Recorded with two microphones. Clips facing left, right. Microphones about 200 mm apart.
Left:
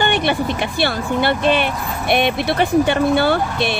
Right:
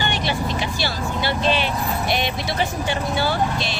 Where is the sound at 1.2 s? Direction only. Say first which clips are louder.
Left 5 dB; 55° left (ahead or behind).